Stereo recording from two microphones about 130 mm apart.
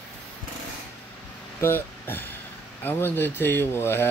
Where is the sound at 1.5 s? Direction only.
20° left (ahead or behind).